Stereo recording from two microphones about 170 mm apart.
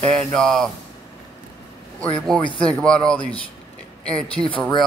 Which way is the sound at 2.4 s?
30° left (ahead or behind).